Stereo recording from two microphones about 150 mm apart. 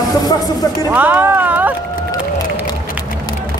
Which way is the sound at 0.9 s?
10° right (ahead or behind).